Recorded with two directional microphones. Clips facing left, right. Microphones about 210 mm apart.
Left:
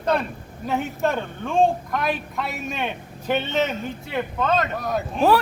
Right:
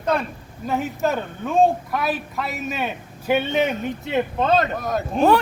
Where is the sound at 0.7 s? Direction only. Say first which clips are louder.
Right 1 dB; centre (ahead or behind).